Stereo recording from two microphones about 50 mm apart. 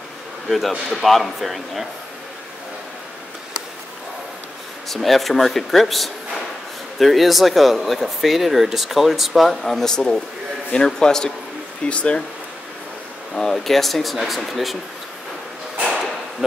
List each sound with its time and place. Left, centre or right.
0.5 s speech: centre
4.8 s speech: centre
9.9 s a man's voice: centre
11.8 s speech: left
13.3 s speech: centre
13.7 s speech: centre
15.8 s a sound: centre